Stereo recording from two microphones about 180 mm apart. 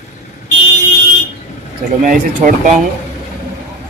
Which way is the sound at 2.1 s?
50° right (ahead or behind).